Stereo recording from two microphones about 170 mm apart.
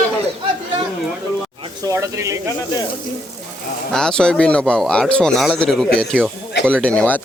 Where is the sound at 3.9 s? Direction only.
5° left (ahead or behind).